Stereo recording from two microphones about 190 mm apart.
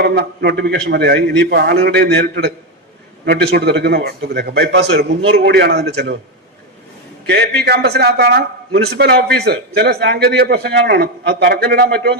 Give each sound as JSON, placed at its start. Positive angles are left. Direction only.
{"t": 0.0, "sound": "a man's voice", "side_deg": -55}
{"t": 4.9, "sound": "a man's voice", "side_deg": -70}
{"t": 7.3, "sound": "a man's voice", "side_deg": -60}